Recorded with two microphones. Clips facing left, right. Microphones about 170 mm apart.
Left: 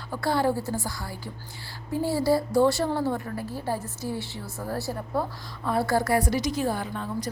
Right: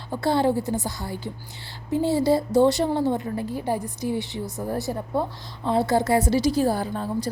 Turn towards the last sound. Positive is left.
turn(degrees=-35)  # may be behind; listen again after turning